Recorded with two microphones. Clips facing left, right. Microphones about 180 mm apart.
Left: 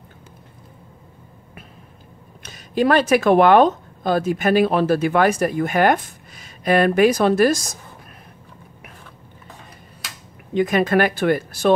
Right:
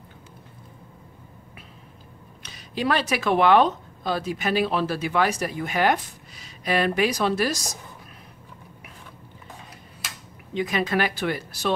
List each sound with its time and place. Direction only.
2.4 s speech: 50° left (ahead or behind)
10.5 s speech: 50° left (ahead or behind)